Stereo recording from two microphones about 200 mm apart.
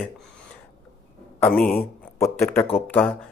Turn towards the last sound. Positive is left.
turn(degrees=10)  # may be behind; listen again after turning